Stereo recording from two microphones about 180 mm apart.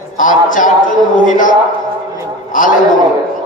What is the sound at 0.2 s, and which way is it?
A man's voice, 45° left (ahead or behind).